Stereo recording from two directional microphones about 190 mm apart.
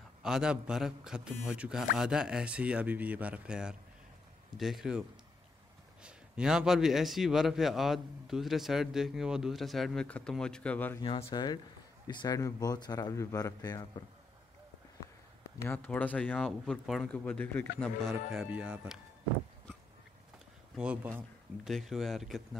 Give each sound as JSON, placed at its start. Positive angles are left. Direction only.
{"t": 0.2, "sound": "a man's voice", "side_deg": -5}
{"t": 6.0, "sound": "a man's voice", "side_deg": -5}
{"t": 11.0, "sound": "speech", "side_deg": 30}
{"t": 15.6, "sound": "a man's voice", "side_deg": 10}
{"t": 20.7, "sound": "a man's voice", "side_deg": -5}